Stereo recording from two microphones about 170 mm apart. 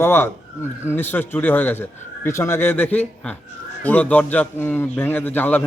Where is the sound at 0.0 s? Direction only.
10° left (ahead or behind).